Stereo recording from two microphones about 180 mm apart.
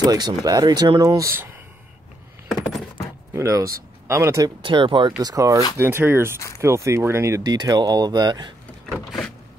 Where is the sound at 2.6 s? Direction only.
Centre (ahead or behind).